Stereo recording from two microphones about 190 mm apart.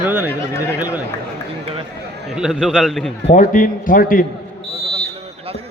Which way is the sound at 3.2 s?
40° left (ahead or behind).